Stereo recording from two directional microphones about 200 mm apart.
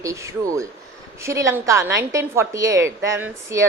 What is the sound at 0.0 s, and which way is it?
A woman's voice, 15° right (ahead or behind).